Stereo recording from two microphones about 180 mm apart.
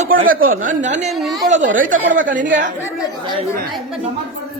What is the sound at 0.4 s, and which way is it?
A man's voice, 50° right (ahead or behind).